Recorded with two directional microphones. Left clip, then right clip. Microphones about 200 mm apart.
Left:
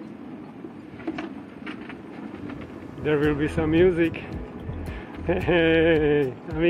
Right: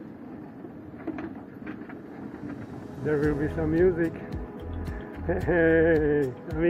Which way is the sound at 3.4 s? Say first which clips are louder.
Left 3 dB; 15° left (ahead or behind).